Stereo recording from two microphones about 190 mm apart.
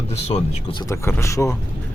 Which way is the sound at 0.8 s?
15° left (ahead or behind).